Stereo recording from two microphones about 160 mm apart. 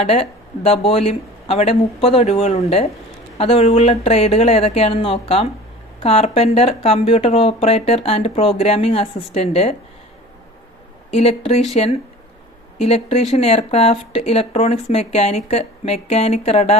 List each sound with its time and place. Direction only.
0.0 s speech: 40° left (ahead or behind)
11.1 s speech: 40° left (ahead or behind)